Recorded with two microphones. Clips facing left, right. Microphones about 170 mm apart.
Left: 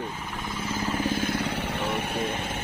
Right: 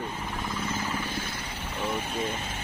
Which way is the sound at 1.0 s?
45° left (ahead or behind).